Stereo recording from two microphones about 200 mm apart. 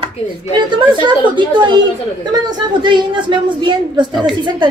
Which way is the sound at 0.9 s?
25° right (ahead or behind).